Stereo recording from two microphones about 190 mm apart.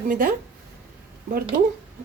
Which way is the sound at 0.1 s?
50° right (ahead or behind).